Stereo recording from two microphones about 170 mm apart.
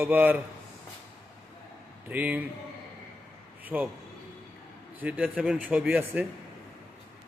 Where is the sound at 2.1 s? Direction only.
10° right (ahead or behind).